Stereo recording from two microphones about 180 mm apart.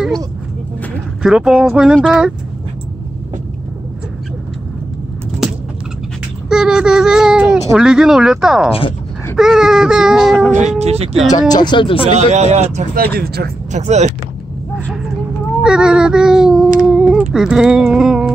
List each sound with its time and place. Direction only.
1.2 s a child's voice: 5° right (ahead or behind)
6.5 s a child's voice: 5° right (ahead or behind)
10.6 s speech: 35° right (ahead or behind)
11.3 s speech: 20° left (ahead or behind)
12.3 s speech: 40° right (ahead or behind)
12.9 s speech: 60° right (ahead or behind)
13.7 s speech: 40° right (ahead or behind)
15.6 s a sound: 5° right (ahead or behind)